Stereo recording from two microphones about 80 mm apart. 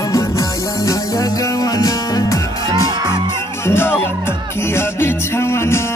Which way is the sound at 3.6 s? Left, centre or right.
Left.